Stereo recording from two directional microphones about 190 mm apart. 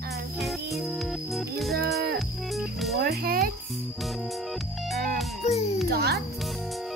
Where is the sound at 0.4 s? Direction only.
Centre (ahead or behind).